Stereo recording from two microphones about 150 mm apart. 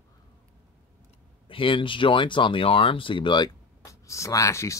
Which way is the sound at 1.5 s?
35° left (ahead or behind).